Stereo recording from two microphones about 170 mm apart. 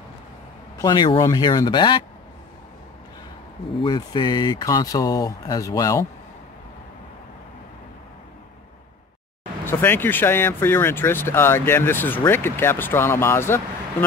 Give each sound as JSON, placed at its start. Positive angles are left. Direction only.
{"t": 0.7, "sound": "speech", "side_deg": 25}
{"t": 3.8, "sound": "speech", "side_deg": 25}
{"t": 9.7, "sound": "speech", "side_deg": 10}